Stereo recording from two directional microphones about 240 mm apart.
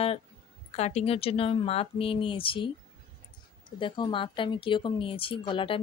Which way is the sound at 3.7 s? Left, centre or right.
Centre.